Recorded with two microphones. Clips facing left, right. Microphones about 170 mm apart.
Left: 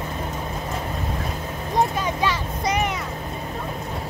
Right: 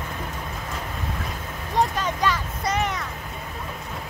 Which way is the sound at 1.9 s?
15° left (ahead or behind).